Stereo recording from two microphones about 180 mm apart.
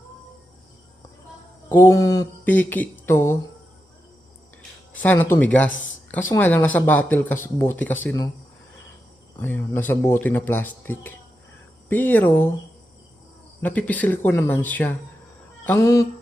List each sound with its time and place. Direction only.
1.7 s speech: 15° left (ahead or behind)
4.9 s speech: 10° left (ahead or behind)
9.4 s speech: 10° left (ahead or behind)
13.6 s speech: 10° left (ahead or behind)